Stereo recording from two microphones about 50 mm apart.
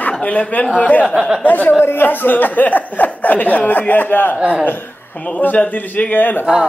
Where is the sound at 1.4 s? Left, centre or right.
Left.